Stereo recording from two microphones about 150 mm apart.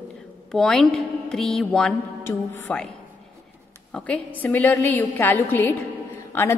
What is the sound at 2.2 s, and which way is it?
Speech, 15° left (ahead or behind).